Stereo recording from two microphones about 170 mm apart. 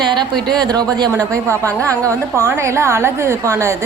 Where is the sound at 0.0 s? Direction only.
25° right (ahead or behind).